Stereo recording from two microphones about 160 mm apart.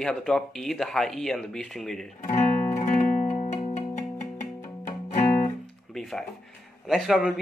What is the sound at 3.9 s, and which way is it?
Music, 50° left (ahead or behind).